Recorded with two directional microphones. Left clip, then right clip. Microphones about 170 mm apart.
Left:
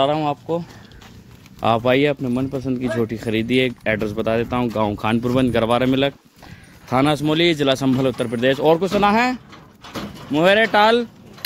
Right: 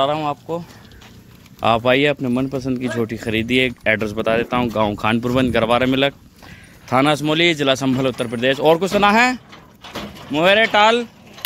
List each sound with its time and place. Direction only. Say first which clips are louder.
0.0 s speech: even; 35° left (ahead or behind)
1.6 s speech: right 1 dB; 10° left (ahead or behind)
2.2 s speech: right 2 dB; 15° right (ahead or behind)
2.7 s speech: even; 5° left (ahead or behind); by 8.5 s 20° left (ahead or behind)
8.6 s speech: right 3 dB; 5° right (ahead or behind)
9.5 s a sound: right 1 dB; 90° left
10.3 s speech: right 1 dB; 20° left (ahead or behind)